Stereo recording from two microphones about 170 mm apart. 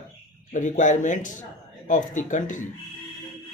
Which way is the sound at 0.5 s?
45° left (ahead or behind).